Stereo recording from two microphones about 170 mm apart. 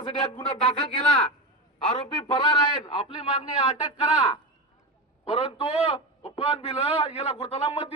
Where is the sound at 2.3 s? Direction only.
30° left (ahead or behind).